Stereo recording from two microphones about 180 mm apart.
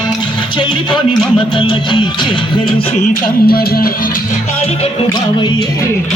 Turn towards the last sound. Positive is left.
turn(degrees=30)  # may be behind; listen again after turning